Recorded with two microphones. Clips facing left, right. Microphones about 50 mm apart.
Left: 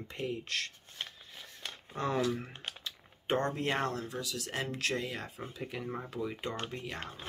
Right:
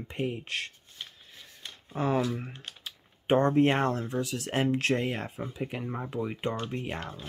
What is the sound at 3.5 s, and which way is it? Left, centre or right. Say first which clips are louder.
Speech: right 9 dB; right.